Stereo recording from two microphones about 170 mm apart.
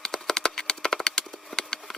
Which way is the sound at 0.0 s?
Centre (ahead or behind).